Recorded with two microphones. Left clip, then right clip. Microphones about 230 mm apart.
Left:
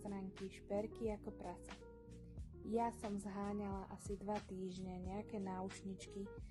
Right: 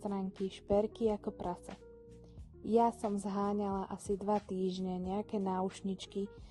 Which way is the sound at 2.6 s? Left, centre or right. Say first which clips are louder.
Right 11 dB; right.